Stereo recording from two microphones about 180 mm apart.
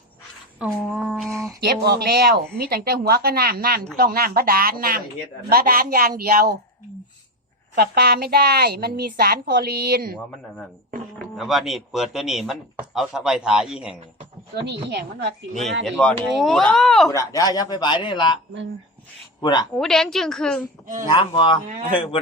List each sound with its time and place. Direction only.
0.8 s speech: 5° left (ahead or behind)
1.0 s a sound: centre (ahead or behind)
1.6 s a woman's voice: 65° right (ahead or behind)
7.8 s a woman's voice: 60° right (ahead or behind)
11.3 s speech: centre (ahead or behind)
14.5 s a woman's voice: 70° right (ahead or behind)
16.0 s speech: 5° left (ahead or behind)
17.1 s speech: 20° left (ahead or behind)
19.4 s speech: 25° left (ahead or behind)
19.7 s speech: centre (ahead or behind)
21.1 s speech: 25° left (ahead or behind)